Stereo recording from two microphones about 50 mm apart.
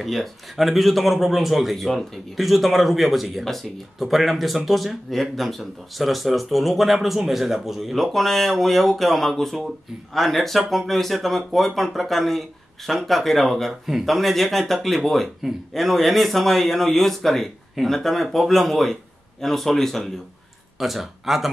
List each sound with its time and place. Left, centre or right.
0.0 s a man's voice: centre
20.8 s a man's voice: centre